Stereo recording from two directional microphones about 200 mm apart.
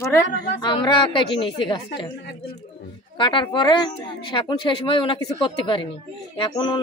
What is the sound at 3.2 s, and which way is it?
A woman's voice, 25° left (ahead or behind).